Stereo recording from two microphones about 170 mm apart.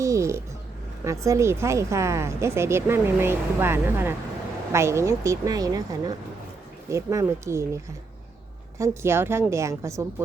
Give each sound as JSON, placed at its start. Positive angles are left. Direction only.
{"t": 0.0, "sound": "a sound", "side_deg": -20}
{"t": 1.0, "sound": "speech", "side_deg": -20}
{"t": 8.8, "sound": "speech", "side_deg": -15}